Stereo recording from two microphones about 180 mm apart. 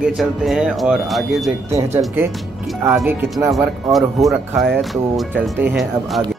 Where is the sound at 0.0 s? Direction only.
Centre (ahead or behind).